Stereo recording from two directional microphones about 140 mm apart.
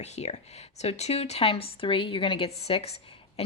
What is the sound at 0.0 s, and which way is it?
Speech, 50° left (ahead or behind).